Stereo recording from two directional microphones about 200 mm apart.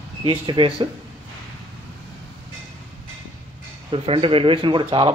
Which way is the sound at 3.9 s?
25° right (ahead or behind).